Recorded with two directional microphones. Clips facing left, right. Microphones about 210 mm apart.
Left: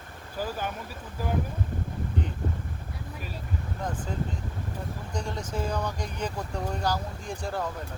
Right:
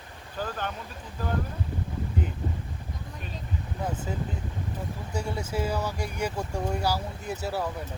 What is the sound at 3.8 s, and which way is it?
Speech, 10° right (ahead or behind).